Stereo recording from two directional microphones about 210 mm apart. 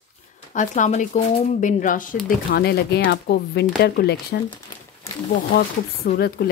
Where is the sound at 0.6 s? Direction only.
35° left (ahead or behind).